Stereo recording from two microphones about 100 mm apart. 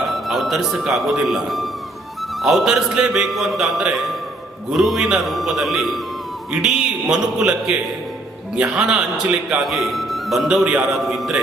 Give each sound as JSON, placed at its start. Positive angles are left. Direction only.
{"t": 0.0, "sound": "a man's voice", "side_deg": 0}